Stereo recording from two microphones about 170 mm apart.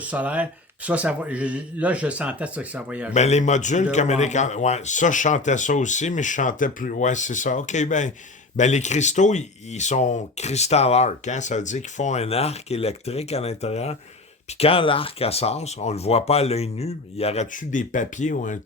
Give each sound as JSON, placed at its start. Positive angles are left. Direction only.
{"t": 0.1, "sound": "speech", "side_deg": -10}
{"t": 3.2, "sound": "speech", "side_deg": 40}